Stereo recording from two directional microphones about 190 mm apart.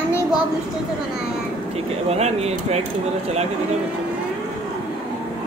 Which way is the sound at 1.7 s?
35° right (ahead or behind).